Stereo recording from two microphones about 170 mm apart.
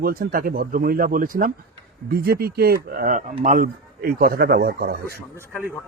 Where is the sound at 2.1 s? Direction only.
65° right (ahead or behind).